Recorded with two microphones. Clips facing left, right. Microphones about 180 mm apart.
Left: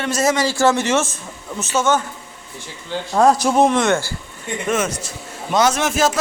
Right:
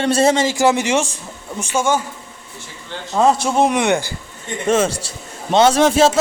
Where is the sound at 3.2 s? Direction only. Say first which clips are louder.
Left 1 dB; 5° right (ahead or behind).